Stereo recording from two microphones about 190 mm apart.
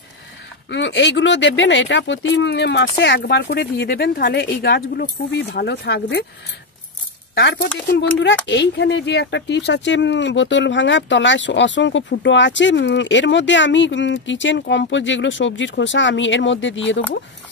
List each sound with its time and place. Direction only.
0.7 s speech: 70° left (ahead or behind)
8.5 s speech: 65° left (ahead or behind)